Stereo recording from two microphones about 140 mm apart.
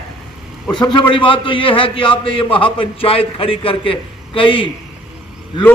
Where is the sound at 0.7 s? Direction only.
30° left (ahead or behind).